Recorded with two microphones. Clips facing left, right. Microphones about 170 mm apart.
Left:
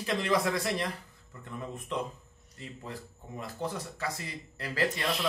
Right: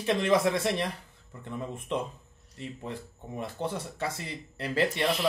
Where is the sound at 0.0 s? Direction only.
25° right (ahead or behind).